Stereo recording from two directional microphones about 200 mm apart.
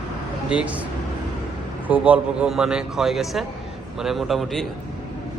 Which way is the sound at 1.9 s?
5° right (ahead or behind).